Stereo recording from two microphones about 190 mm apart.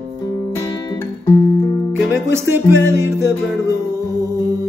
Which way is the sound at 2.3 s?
15° right (ahead or behind).